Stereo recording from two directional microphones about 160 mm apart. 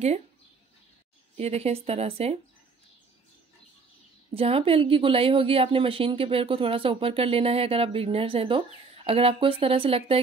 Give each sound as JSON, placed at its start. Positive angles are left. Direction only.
{"t": 1.3, "sound": "a woman's voice", "side_deg": -40}
{"t": 4.3, "sound": "a woman's voice", "side_deg": -35}